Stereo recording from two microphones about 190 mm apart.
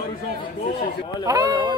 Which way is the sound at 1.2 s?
20° right (ahead or behind).